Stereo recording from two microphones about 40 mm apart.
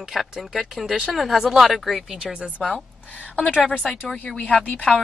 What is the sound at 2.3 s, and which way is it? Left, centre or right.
Speech, right.